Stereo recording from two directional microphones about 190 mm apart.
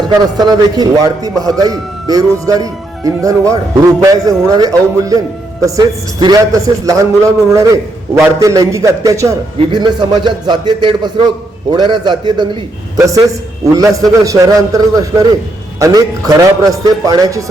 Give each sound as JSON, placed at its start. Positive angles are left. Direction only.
{"t": 0.2, "sound": "a man's voice", "side_deg": -20}